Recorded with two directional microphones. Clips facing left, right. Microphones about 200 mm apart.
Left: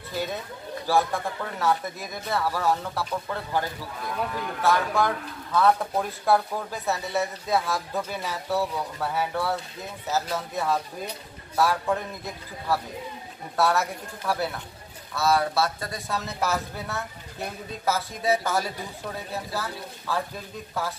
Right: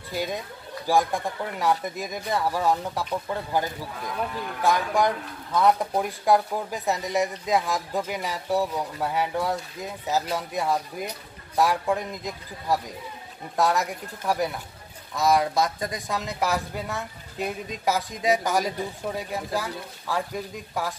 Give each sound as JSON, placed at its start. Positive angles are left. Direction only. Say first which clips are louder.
{"t": 0.1, "sound": "speech", "louder": "right 1 dB", "side_deg": -10}